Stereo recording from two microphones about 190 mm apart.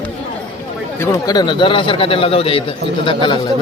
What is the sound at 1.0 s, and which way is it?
A man's voice, 20° left (ahead or behind).